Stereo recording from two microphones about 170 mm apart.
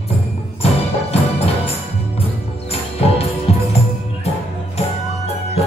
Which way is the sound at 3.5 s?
40° left (ahead or behind).